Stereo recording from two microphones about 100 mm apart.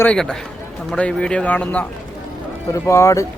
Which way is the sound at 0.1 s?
5° left (ahead or behind).